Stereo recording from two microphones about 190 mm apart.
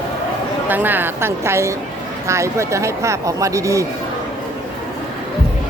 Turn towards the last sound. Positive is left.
turn(degrees=-15)  # may be behind; listen again after turning